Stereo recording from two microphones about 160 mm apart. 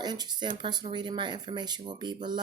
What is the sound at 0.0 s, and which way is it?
Speech, 25° right (ahead or behind).